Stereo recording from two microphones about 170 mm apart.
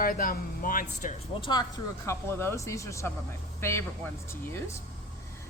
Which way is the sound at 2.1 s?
15° left (ahead or behind).